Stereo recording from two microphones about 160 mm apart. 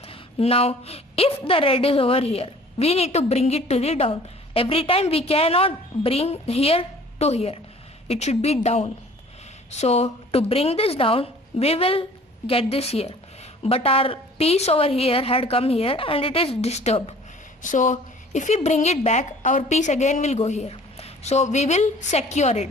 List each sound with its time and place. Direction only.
0.1 s a woman's voice: 35° left (ahead or behind)
17.6 s a woman's voice: 55° left (ahead or behind)